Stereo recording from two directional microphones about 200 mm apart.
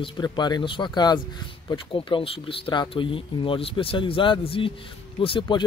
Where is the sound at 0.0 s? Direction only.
20° left (ahead or behind).